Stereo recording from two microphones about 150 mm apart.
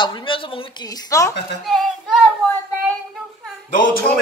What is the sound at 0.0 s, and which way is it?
Speech, 35° left (ahead or behind).